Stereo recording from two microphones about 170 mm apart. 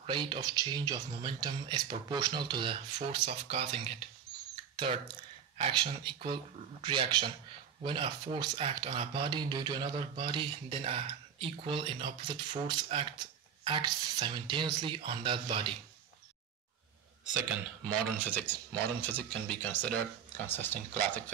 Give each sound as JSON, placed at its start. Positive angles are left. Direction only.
{"t": 0.0, "sound": "speech", "side_deg": -30}
{"t": 18.2, "sound": "speech", "side_deg": 10}